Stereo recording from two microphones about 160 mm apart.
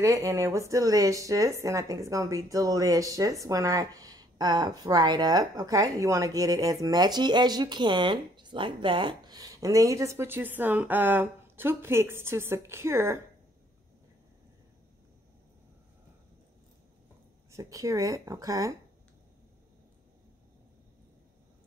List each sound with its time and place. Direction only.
0.0 s speech: 20° right (ahead or behind)
17.5 s speech: 20° right (ahead or behind)